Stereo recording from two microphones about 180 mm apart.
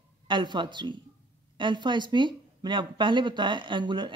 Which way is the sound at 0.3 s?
25° right (ahead or behind).